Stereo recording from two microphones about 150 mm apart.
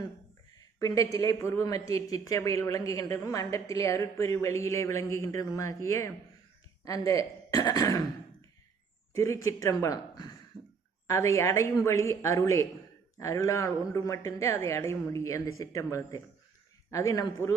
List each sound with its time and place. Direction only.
0.8 s a woman's voice: 25° left (ahead or behind)
9.1 s a woman's voice: 20° left (ahead or behind)